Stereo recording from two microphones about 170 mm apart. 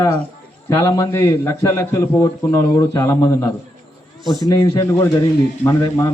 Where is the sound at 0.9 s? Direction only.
15° left (ahead or behind).